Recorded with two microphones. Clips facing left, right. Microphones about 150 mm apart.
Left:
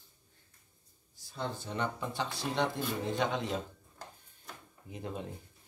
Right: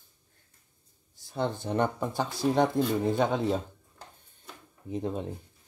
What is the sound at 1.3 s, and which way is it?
Speech, 60° right (ahead or behind).